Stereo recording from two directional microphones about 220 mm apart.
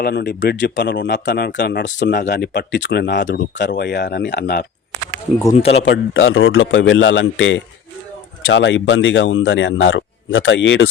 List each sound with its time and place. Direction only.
0.0 s speech: 45° left (ahead or behind)
2.0 s speech: 40° left (ahead or behind)
5.5 s speech: 25° left (ahead or behind)
5.8 s a man's voice: 60° left (ahead or behind)